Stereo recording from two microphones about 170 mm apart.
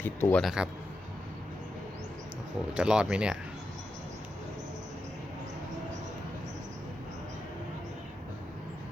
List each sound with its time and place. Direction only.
0.0 s a man's voice: 10° left (ahead or behind)
0.4 s speech: 5° right (ahead or behind)
2.7 s speech: 5° right (ahead or behind)